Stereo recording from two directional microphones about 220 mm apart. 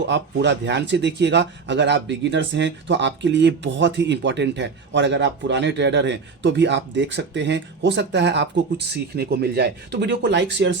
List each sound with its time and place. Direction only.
0.0 s speech: 55° right (ahead or behind)